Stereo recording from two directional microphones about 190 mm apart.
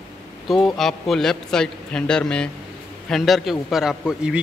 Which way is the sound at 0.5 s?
Centre (ahead or behind).